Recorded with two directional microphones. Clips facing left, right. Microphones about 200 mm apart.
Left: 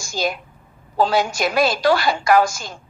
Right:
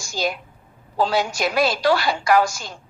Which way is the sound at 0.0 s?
50° left (ahead or behind).